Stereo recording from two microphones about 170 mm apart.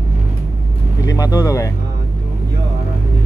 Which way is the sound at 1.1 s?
20° left (ahead or behind).